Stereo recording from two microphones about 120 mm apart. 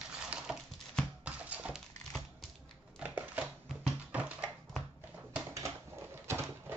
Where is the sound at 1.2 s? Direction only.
10° right (ahead or behind).